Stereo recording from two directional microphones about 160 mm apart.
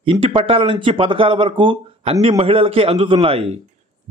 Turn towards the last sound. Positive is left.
turn(degrees=-40)  # may be behind; listen again after turning